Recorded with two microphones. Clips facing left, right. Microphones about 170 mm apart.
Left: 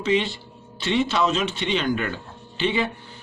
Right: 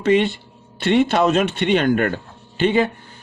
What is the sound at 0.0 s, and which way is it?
A man's voice, 55° right (ahead or behind).